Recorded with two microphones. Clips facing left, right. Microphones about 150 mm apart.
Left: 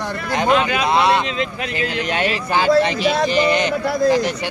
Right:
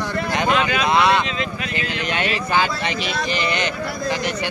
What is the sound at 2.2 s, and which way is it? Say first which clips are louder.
Speech: left 3 dB; 35° left (ahead or behind).